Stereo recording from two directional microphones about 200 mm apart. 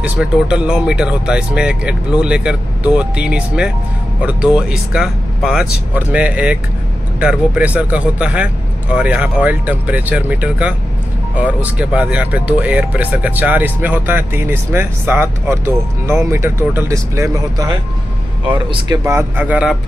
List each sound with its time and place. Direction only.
0.0 s speech: 5° right (ahead or behind); by 18.9 s 25° right (ahead or behind)
19.0 s speech: 10° right (ahead or behind)